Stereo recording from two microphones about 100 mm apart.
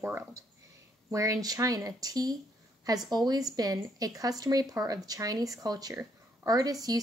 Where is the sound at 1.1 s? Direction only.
35° right (ahead or behind).